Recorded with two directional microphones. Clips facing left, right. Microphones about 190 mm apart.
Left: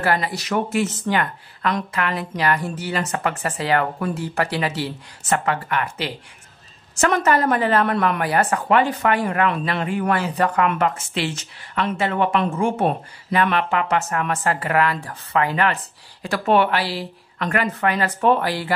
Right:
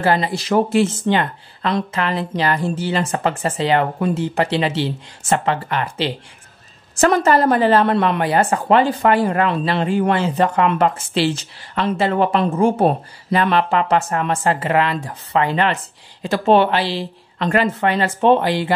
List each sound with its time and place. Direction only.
0.0 s speech: 25° right (ahead or behind)